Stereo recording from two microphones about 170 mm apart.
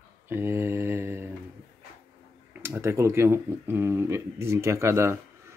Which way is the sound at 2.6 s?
15° right (ahead or behind).